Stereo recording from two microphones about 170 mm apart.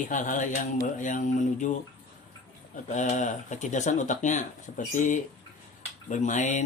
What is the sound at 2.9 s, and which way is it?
Speech, 45° left (ahead or behind).